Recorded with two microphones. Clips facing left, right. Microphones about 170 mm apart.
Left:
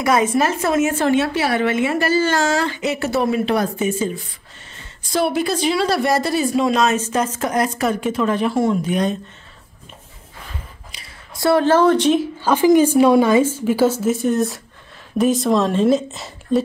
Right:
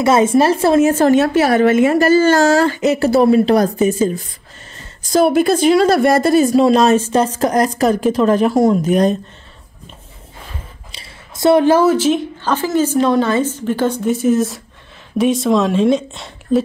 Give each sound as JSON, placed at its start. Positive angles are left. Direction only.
{"t": 0.0, "sound": "speech", "side_deg": -25}
{"t": 10.9, "sound": "speech", "side_deg": -25}
{"t": 12.4, "sound": "a woman's voice", "side_deg": 10}